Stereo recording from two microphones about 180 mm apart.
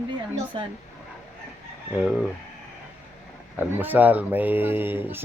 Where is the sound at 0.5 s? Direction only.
30° right (ahead or behind).